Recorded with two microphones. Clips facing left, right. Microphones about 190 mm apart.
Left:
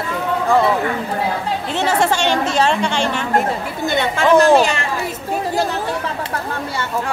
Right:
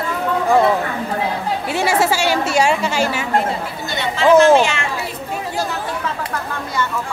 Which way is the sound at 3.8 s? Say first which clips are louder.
Left 7 dB; 50° left (ahead or behind).